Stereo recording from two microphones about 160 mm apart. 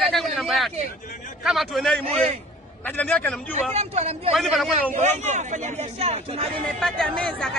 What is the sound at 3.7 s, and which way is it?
Speech, 40° right (ahead or behind).